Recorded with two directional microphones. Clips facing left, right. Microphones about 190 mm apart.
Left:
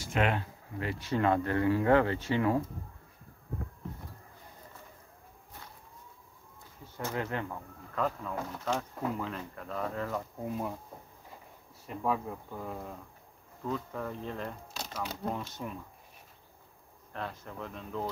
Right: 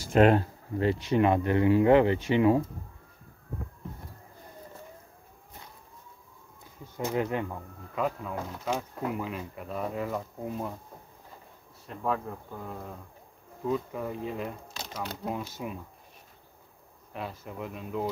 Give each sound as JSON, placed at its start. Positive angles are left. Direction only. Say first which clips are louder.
{"t": 0.0, "sound": "speech", "louder": "right 9 dB", "side_deg": -35}
{"t": 0.9, "sound": "speech", "louder": "right 1 dB", "side_deg": -20}
{"t": 7.0, "sound": "speech", "louder": "right 5 dB", "side_deg": -15}
{"t": 11.9, "sound": "speech", "louder": "right 1 dB", "side_deg": 5}
{"t": 13.7, "sound": "speech", "louder": "right 5 dB", "side_deg": -10}
{"t": 17.1, "sound": "speech", "louder": "right 2 dB", "side_deg": -10}